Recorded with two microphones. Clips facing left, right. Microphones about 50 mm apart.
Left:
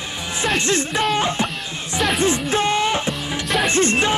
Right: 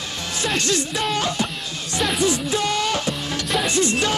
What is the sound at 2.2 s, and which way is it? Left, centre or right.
Music, left.